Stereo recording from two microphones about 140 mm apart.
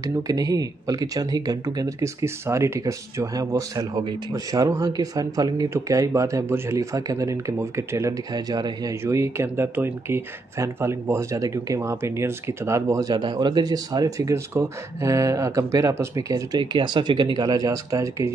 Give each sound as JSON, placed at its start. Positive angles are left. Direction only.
{"t": 0.0, "sound": "speech", "side_deg": -25}